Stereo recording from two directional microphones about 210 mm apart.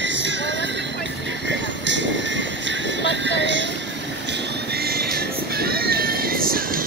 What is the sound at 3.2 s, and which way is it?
Music, 60° right (ahead or behind).